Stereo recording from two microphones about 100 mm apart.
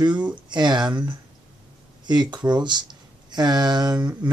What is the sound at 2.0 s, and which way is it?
Speech, 45° right (ahead or behind).